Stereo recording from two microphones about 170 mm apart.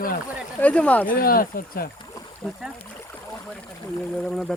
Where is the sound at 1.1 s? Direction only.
60° left (ahead or behind).